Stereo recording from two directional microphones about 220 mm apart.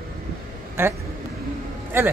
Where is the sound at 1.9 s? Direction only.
10° right (ahead or behind).